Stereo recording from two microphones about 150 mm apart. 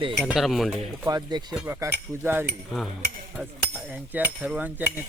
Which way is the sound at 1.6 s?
15° right (ahead or behind).